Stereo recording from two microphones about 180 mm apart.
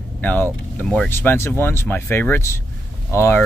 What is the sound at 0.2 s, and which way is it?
Speech, 10° left (ahead or behind).